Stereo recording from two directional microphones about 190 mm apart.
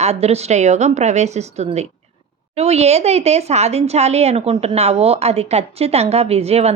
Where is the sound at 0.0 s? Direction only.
35° right (ahead or behind).